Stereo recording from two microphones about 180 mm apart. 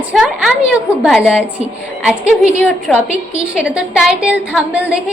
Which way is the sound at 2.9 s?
5° left (ahead or behind).